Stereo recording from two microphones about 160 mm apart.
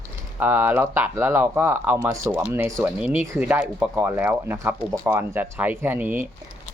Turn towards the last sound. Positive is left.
turn(degrees=-10)  # may be behind; listen again after turning